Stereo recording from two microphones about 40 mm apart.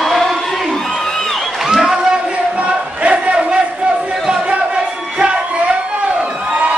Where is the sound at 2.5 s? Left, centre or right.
Right.